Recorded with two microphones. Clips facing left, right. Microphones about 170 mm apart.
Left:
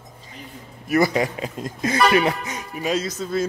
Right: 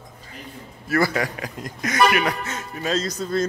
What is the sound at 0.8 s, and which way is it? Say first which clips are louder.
A man's voice: left 3 dB; 20° left (ahead or behind).